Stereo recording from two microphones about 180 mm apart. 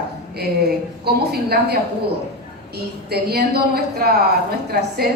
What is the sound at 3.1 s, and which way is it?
A woman's voice, 60° right (ahead or behind).